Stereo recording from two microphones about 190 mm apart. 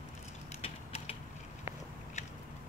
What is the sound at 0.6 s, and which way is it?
Typing, 30° left (ahead or behind).